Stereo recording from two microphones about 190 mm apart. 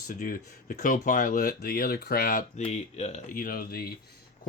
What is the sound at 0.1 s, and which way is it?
Speech, 45° left (ahead or behind).